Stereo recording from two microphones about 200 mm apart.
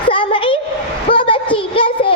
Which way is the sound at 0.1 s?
25° left (ahead or behind).